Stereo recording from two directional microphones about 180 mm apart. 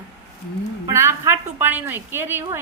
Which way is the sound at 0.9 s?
15° right (ahead or behind).